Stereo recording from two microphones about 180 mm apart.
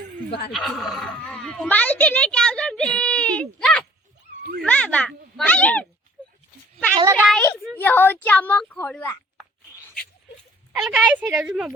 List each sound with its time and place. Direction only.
0.3 s speech: 65° left (ahead or behind)
0.5 s a child's voice: centre (ahead or behind)
7.0 s a woman's voice: 15° right (ahead or behind)
7.8 s a woman's voice: 10° left (ahead or behind)
10.8 s a woman's voice: 5° right (ahead or behind)